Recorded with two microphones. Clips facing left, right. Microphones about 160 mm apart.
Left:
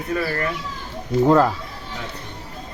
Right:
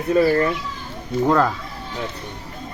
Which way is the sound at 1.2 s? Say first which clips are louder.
Left 2 dB; 5° left (ahead or behind).